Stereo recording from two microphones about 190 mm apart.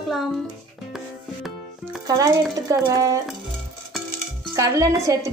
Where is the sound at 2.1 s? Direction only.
20° right (ahead or behind).